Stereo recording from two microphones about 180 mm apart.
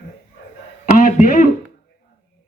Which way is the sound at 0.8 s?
45° left (ahead or behind).